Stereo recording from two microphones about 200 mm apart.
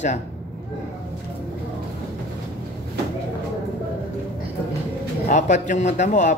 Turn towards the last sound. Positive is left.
turn(degrees=35)  # may be behind; listen again after turning